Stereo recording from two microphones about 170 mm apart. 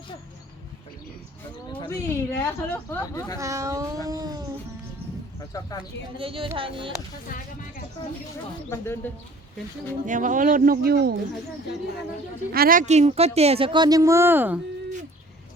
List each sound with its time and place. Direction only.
1.9 s a woman's voice: 15° left (ahead or behind)
3.3 s speech: 20° right (ahead or behind)
5.5 s speech: 20° left (ahead or behind)
6.1 s speech: 30° right (ahead or behind)
7.3 s speech: 55° left (ahead or behind)
8.7 s a woman's voice: 15° left (ahead or behind)
10.1 s speech: 50° right (ahead or behind)
12.5 s speech: 60° right (ahead or behind); by 14.6 s 10° right (ahead or behind)